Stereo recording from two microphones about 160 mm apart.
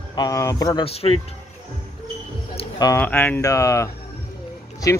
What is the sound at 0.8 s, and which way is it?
Speech, 40° left (ahead or behind).